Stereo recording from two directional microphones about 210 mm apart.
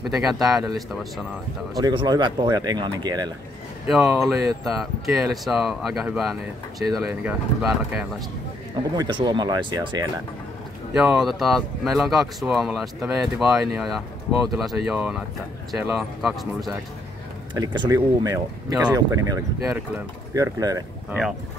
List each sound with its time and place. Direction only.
0.0 s speech: centre (ahead or behind)
1.8 s speech: 20° right (ahead or behind)
3.8 s speech: 5° right (ahead or behind)
8.9 s speech: 20° right (ahead or behind)
10.9 s speech: 5° right (ahead or behind)
17.6 s speech: 15° right (ahead or behind)